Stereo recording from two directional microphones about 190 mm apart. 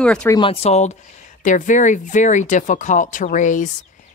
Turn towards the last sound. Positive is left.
turn(degrees=40)  # may be behind; listen again after turning